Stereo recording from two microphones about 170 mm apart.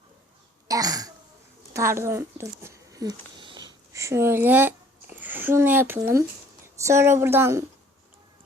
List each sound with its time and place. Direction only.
0.7 s wail: 20° right (ahead or behind)
1.7 s a woman's voice: 15° right (ahead or behind)